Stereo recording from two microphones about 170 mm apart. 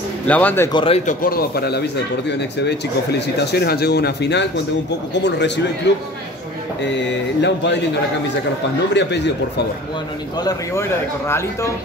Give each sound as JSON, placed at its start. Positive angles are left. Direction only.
{"t": 0.3, "sound": "a man's voice", "side_deg": 10}
{"t": 0.7, "sound": "speech", "side_deg": 35}
{"t": 1.0, "sound": "speech", "side_deg": 60}
{"t": 5.1, "sound": "mantra", "side_deg": 90}
{"t": 6.8, "sound": "mantra", "side_deg": 90}
{"t": 9.0, "sound": "mantra", "side_deg": 90}
{"t": 10.4, "sound": "a man's voice", "side_deg": 15}